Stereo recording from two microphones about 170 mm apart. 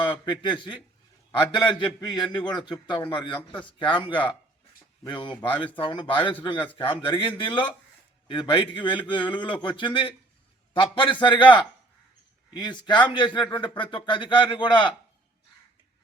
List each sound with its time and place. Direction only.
0.0 s speech: 30° left (ahead or behind)